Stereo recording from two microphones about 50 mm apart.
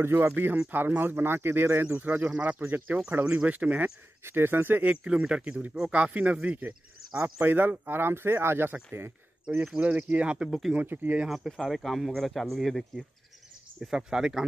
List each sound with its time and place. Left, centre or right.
0.0 s speech: right
2.0 s speech: right
2.6 s speech: right
3.3 s speech: right
4.2 s speech: right
5.0 s speech: centre
7.3 s speech: right
9.8 s speech: right
11.2 s speech: centre
13.7 s speech: centre